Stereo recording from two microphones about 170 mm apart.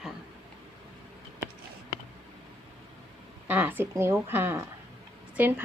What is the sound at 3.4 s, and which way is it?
A woman's voice, 10° right (ahead or behind).